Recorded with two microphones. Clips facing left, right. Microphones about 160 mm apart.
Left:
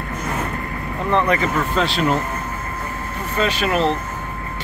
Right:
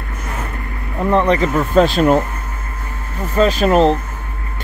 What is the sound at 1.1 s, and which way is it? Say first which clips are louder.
Speech: right 4 dB; 35° right (ahead or behind).